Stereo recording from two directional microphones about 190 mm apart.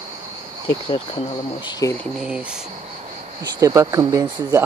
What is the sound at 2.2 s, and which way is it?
Speech, 5° right (ahead or behind).